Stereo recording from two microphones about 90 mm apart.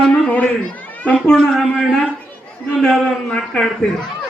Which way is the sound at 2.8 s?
5° left (ahead or behind).